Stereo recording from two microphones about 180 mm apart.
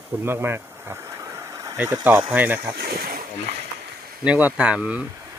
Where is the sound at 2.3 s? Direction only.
10° right (ahead or behind).